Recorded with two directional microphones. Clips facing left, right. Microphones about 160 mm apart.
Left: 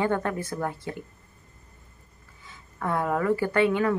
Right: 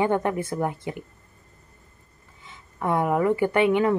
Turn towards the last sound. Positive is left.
turn(degrees=-20)  # may be behind; listen again after turning